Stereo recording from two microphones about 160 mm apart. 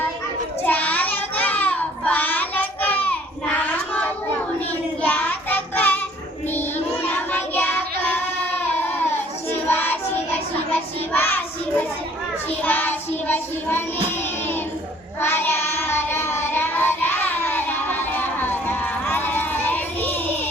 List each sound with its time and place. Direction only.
0.6 s child singing: 10° left (ahead or behind)
7.1 s child singing: 10° left (ahead or behind)
15.2 s child singing: 15° left (ahead or behind)